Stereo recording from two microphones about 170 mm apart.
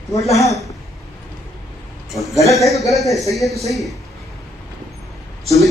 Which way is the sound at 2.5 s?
Centre (ahead or behind).